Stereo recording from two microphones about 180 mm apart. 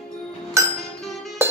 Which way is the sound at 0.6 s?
15° right (ahead or behind).